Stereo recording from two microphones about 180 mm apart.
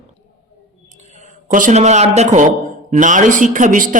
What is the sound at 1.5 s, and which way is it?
A man's voice, 45° right (ahead or behind).